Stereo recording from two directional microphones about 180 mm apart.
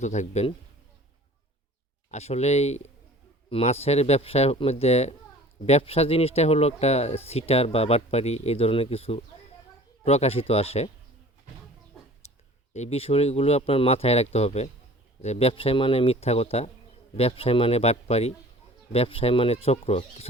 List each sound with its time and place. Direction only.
0.0 s speech: 40° left (ahead or behind)
2.0 s speech: 35° left (ahead or behind)
12.2 s a sound: 35° left (ahead or behind)
12.7 s speech: 35° left (ahead or behind)